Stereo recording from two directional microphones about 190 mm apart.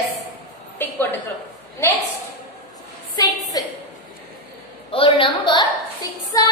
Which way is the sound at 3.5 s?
20° left (ahead or behind).